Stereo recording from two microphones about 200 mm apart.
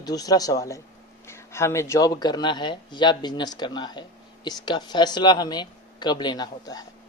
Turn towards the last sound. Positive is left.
turn(degrees=20)  # may be behind; listen again after turning